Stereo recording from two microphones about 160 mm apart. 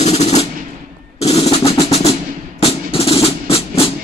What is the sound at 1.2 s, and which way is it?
Drum roll, 40° left (ahead or behind).